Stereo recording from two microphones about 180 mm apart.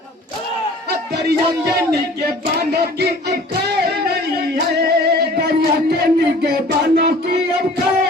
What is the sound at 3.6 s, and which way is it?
Music, 65° right (ahead or behind).